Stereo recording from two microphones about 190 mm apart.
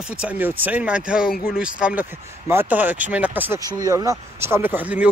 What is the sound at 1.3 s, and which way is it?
Speech, 50° left (ahead or behind).